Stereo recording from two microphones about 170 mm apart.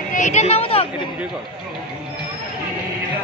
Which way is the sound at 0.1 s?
45° left (ahead or behind).